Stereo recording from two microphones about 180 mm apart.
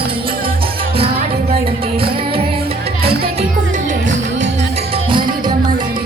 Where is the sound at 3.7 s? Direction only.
45° right (ahead or behind).